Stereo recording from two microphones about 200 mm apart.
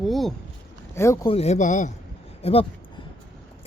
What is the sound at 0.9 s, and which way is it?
Speech, 15° left (ahead or behind).